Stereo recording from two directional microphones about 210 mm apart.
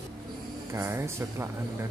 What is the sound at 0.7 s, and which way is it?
Speech, 10° right (ahead or behind).